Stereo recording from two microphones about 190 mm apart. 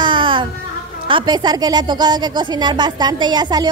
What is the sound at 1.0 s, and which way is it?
A woman's voice, 25° right (ahead or behind).